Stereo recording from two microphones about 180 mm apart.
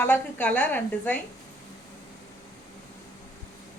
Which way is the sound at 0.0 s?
10° left (ahead or behind).